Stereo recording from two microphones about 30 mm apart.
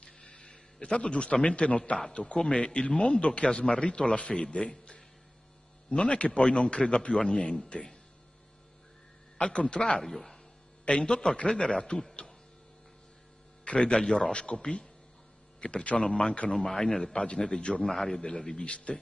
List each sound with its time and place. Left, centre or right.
0.7 s speech: left
9.7 s speech: left
10.0 s a man's voice: centre
10.9 s speech: left
12.1 s a sound: centre
13.7 s speech: left
16.1 s speech: left
17.1 s speech: left
17.8 s speech: centre
18.6 s speech: left